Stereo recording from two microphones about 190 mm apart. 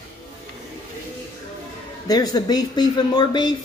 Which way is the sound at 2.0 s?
20° left (ahead or behind).